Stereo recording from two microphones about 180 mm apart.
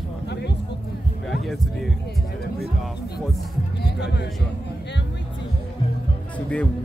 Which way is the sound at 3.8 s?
70° left (ahead or behind).